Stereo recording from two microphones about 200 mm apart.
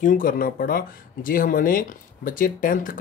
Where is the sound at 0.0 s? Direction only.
45° left (ahead or behind).